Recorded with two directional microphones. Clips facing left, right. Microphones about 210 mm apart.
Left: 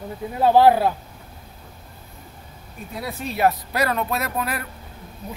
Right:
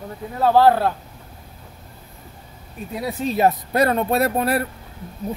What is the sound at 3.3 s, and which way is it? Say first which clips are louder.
Speech: right 2 dB; 25° right (ahead or behind).